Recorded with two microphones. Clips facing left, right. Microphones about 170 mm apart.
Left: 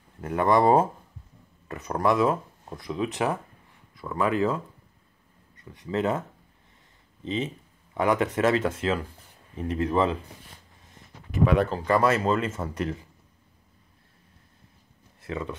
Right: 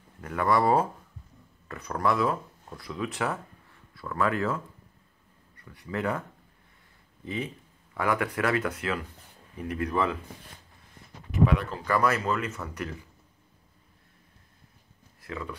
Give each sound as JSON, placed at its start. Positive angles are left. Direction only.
{"t": 0.2, "sound": "speech", "side_deg": 25}
{"t": 7.2, "sound": "speech", "side_deg": 25}
{"t": 11.7, "sound": "speech", "side_deg": 25}
{"t": 15.2, "sound": "speech", "side_deg": 25}